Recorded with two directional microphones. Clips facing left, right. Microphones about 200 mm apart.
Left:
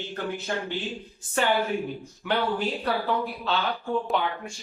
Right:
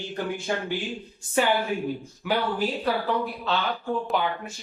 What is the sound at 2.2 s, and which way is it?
A woman's voice, 5° right (ahead or behind).